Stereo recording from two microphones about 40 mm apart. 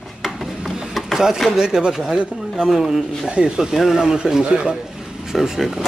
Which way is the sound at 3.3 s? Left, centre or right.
Right.